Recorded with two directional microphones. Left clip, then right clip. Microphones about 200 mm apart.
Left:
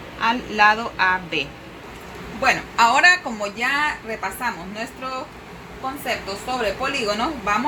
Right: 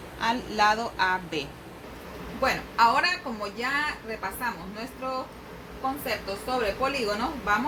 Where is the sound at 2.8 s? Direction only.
35° left (ahead or behind).